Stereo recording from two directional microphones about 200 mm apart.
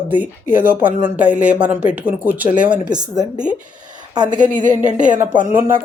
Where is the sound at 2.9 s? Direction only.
20° right (ahead or behind).